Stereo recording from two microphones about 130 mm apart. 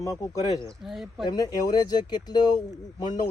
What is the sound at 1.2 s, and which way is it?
Speech, 30° left (ahead or behind).